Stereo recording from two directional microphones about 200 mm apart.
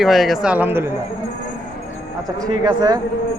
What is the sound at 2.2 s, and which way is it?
Speech, 20° right (ahead or behind).